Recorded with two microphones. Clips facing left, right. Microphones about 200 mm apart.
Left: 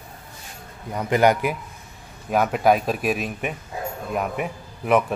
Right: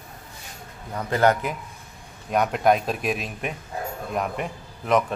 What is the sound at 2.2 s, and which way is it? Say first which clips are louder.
A man's voice: left 2 dB; 5° left (ahead or behind).